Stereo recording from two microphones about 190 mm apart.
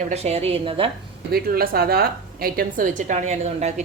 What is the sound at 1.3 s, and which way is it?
A woman's voice, 50° right (ahead or behind).